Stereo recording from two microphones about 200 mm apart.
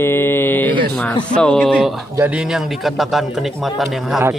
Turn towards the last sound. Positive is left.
turn(degrees=0)  # may be behind; listen again after turning